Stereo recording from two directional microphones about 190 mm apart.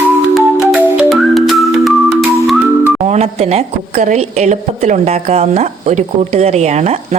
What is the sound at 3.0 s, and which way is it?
A woman's voice, 35° right (ahead or behind).